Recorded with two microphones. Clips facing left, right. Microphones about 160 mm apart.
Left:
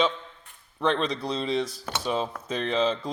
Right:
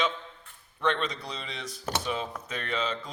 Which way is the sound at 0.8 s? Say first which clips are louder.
Left 4 dB; 35° left (ahead or behind).